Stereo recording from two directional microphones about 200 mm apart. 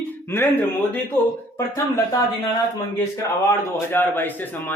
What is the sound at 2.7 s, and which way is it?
A man's voice, 15° left (ahead or behind).